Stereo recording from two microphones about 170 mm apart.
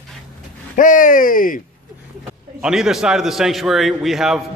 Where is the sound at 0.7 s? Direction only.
50° left (ahead or behind).